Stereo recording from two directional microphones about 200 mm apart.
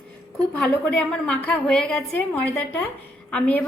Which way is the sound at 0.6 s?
5° left (ahead or behind).